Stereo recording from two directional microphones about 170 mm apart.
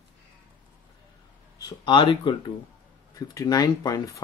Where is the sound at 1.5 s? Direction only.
25° left (ahead or behind).